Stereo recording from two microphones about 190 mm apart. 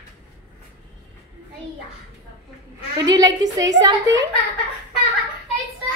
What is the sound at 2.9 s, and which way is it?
A woman's voice, 20° right (ahead or behind).